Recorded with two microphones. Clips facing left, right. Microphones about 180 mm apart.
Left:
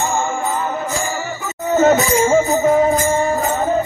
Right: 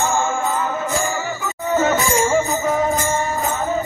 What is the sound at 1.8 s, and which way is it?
Music, 45° left (ahead or behind).